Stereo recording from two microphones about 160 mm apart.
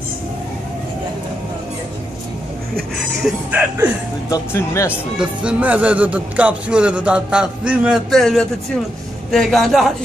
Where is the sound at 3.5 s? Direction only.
10° right (ahead or behind).